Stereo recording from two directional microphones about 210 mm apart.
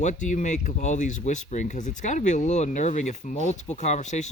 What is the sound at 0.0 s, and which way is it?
Speech, 35° left (ahead or behind).